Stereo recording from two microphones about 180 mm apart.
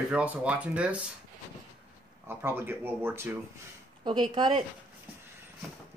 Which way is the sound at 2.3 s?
15° right (ahead or behind).